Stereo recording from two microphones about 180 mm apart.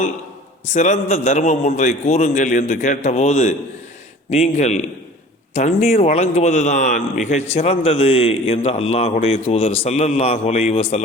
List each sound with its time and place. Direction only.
0.7 s a man's voice: 40° left (ahead or behind)